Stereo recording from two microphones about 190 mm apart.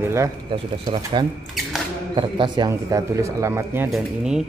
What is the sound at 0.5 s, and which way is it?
Speech, 25° right (ahead or behind).